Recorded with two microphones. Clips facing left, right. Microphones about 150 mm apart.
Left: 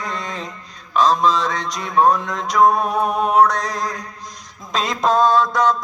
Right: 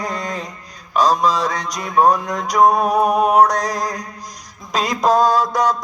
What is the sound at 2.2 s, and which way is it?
Mantra, 45° right (ahead or behind).